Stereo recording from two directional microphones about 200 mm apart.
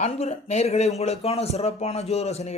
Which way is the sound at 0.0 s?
30° left (ahead or behind).